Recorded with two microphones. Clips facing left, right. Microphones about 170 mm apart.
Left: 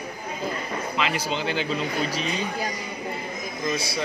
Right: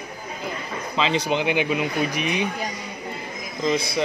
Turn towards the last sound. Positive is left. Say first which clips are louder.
# right 5 dB
turn(degrees=-20)  # may be behind; listen again after turning